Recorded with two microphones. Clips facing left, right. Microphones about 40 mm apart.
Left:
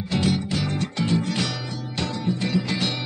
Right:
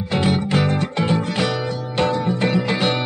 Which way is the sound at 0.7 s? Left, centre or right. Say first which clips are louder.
Right 4 dB; right.